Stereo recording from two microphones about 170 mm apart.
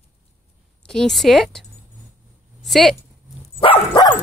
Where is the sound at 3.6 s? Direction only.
30° left (ahead or behind).